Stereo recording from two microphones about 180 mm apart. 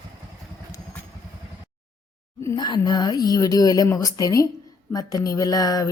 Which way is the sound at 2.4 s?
25° left (ahead or behind).